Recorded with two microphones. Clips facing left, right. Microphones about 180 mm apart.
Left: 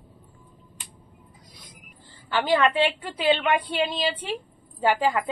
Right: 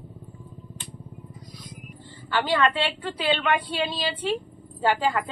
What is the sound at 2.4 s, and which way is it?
A woman's voice, 15° left (ahead or behind).